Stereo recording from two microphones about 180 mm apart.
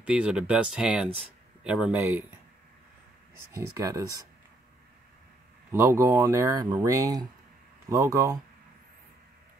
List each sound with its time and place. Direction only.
0.0 s speech: 5° right (ahead or behind)
3.5 s speech: 15° right (ahead or behind)
5.7 s speech: 15° right (ahead or behind)